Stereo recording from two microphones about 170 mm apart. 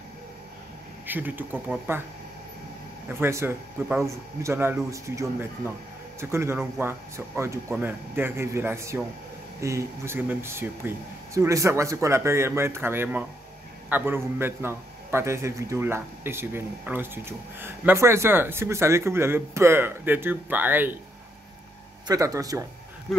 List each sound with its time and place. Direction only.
1.0 s a man's voice: 10° right (ahead or behind)
3.1 s a man's voice: 15° right (ahead or behind)
22.0 s speech: 20° right (ahead or behind)